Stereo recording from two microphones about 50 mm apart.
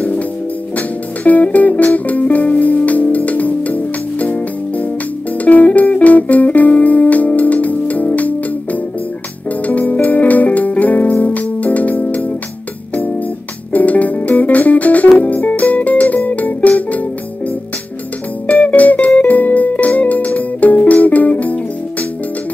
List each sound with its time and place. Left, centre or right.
0.7 s music: left
13.7 s music: left
18.5 s music: left